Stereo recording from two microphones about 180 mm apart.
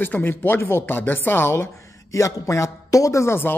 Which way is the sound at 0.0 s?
10° left (ahead or behind).